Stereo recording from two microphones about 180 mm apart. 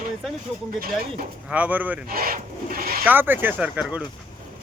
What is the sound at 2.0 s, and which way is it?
Rub, 55° right (ahead or behind).